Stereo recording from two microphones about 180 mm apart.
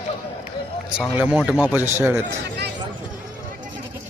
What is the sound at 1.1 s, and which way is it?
Speech, 5° right (ahead or behind).